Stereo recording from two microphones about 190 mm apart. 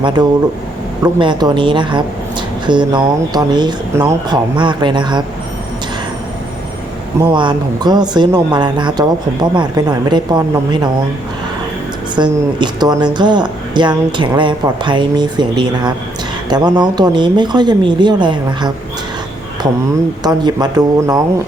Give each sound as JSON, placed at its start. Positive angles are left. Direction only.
{"t": 0.0, "sound": "speech", "side_deg": -20}
{"t": 7.3, "sound": "speech", "side_deg": -25}
{"t": 12.1, "sound": "speech", "side_deg": -25}
{"t": 20.2, "sound": "speech", "side_deg": -20}